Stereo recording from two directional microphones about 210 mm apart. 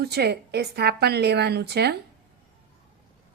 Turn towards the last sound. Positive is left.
turn(degrees=-50)  # may be behind; listen again after turning